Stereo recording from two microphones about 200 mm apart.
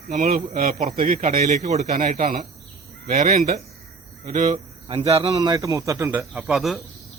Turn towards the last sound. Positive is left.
turn(degrees=0)  # may be behind; listen again after turning